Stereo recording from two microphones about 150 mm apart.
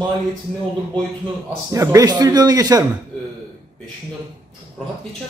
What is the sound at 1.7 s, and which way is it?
A man's voice, 20° right (ahead or behind).